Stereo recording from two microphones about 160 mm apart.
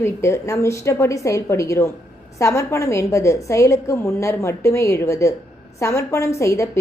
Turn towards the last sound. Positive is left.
turn(degrees=20)  # may be behind; listen again after turning